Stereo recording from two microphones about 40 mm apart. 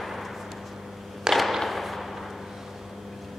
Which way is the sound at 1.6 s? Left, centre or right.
Centre.